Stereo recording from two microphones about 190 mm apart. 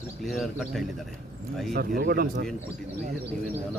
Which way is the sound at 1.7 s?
50° right (ahead or behind).